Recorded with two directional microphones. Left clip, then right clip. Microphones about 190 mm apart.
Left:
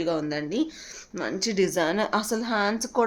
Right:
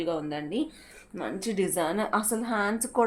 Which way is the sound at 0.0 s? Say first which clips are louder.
Left 4 dB; 50° left (ahead or behind).